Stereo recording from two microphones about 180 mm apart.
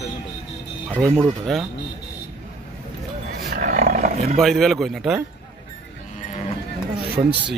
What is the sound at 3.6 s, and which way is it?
Roar, 45° right (ahead or behind).